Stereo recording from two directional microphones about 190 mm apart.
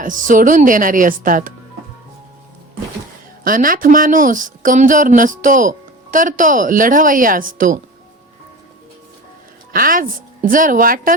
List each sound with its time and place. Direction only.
0.0 s speech: 45° right (ahead or behind)
3.4 s speech: 45° right (ahead or behind)
9.7 s speech: 45° right (ahead or behind)